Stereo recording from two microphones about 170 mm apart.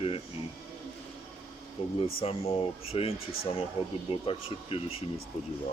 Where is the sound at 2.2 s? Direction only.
35° left (ahead or behind).